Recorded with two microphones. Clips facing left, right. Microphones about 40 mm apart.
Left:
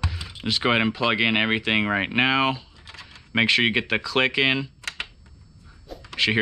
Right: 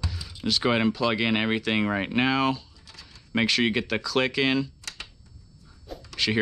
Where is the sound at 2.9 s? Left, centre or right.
Left.